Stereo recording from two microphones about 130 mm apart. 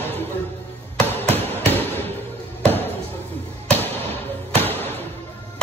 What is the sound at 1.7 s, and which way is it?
Basketball bounce, 15° left (ahead or behind).